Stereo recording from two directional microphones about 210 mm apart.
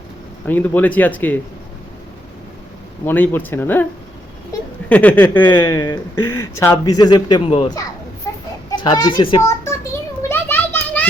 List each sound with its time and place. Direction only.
0.4 s speech: 10° left (ahead or behind)
3.0 s speech: 10° left (ahead or behind)
4.9 s a child's voice: 5° left (ahead or behind)
10.2 s children playing: 10° left (ahead or behind)